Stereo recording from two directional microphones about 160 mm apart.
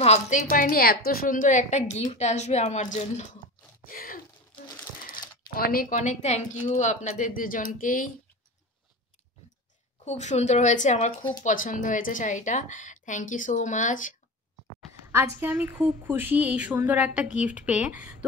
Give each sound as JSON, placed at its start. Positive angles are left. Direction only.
{"t": 0.0, "sound": "a woman's voice", "side_deg": 40}
{"t": 0.5, "sound": "a woman's voice", "side_deg": 60}
{"t": 3.8, "sound": "a sound", "side_deg": 65}
{"t": 4.5, "sound": "crumpling", "side_deg": 25}
{"t": 5.5, "sound": "speech", "side_deg": 65}
{"t": 5.9, "sound": "a woman's voice", "side_deg": 45}
{"t": 10.0, "sound": "a woman's voice", "side_deg": 45}
{"t": 15.0, "sound": "a woman's voice", "side_deg": -15}